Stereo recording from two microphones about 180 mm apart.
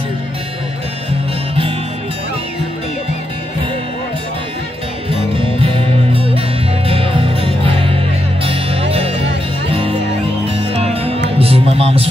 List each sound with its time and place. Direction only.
5.3 s music: 30° right (ahead or behind)
9.7 s music: 30° right (ahead or behind)